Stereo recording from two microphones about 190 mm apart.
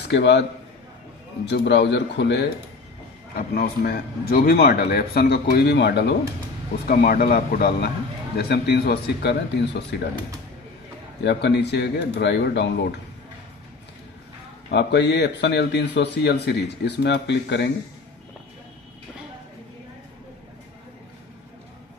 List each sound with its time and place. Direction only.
0.1 s a man's voice: 65° left (ahead or behind)
3.3 s speech: 50° left (ahead or behind)
6.9 s speech: 50° left (ahead or behind)
11.2 s speech: 65° left (ahead or behind)
14.7 s speech: 65° left (ahead or behind)